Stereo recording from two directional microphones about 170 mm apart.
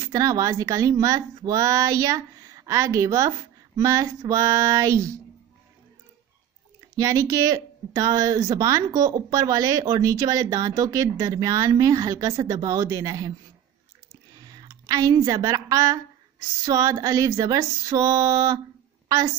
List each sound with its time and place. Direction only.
0.0 s speech: 20° right (ahead or behind)
7.0 s speech: 20° right (ahead or behind)
14.3 s a woman's voice: 20° right (ahead or behind)